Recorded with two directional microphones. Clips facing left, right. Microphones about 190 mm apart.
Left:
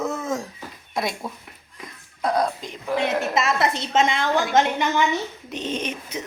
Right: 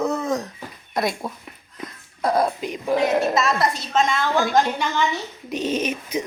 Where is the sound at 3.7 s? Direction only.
25° left (ahead or behind).